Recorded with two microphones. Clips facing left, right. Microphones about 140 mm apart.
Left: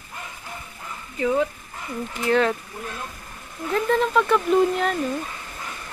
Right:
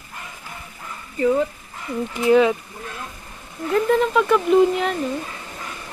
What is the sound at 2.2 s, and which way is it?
Speech, 10° right (ahead or behind).